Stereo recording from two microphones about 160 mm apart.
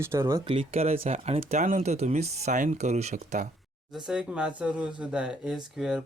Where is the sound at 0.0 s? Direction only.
15° right (ahead or behind).